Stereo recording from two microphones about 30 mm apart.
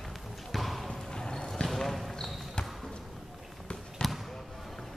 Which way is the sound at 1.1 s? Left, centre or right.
Left.